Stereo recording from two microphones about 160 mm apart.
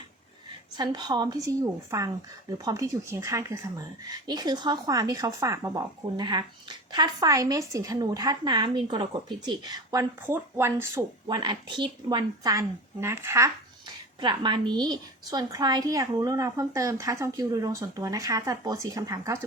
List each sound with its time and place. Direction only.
0.8 s speech: 25° right (ahead or behind)
14.2 s speech: 30° right (ahead or behind)